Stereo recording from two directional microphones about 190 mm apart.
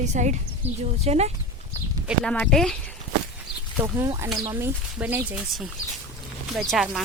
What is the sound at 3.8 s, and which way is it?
Speech, 15° right (ahead or behind).